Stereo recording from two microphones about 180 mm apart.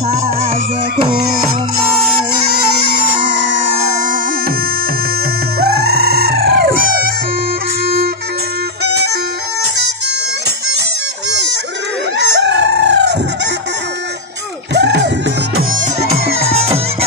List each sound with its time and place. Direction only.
3.9 s music: 45° right (ahead or behind)
5.6 s music: 65° right (ahead or behind)
7.8 s music: 60° right (ahead or behind)
12.2 s chicken: 75° right (ahead or behind)
14.7 s music: 75° right (ahead or behind)
15.7 s music: 40° right (ahead or behind)